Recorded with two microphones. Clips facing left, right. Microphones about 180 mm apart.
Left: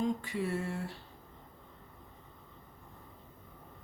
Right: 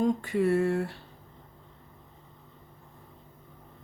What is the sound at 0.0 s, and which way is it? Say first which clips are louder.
Speech: right 8 dB; 55° right (ahead or behind).